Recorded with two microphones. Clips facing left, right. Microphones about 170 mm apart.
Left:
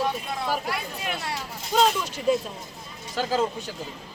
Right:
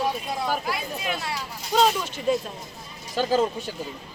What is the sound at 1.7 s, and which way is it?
Speech, 5° left (ahead or behind).